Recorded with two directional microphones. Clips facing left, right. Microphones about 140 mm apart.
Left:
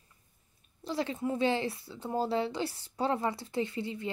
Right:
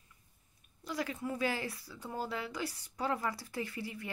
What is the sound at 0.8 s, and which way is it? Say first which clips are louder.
Speech: left 5 dB; 25° left (ahead or behind).